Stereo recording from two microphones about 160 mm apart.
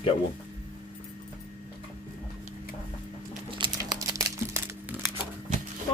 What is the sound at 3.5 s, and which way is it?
Crumpling, 30° right (ahead or behind).